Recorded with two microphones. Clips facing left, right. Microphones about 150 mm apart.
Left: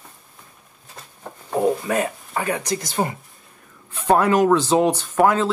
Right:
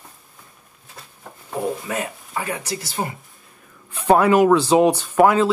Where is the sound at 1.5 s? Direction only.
40° left (ahead or behind).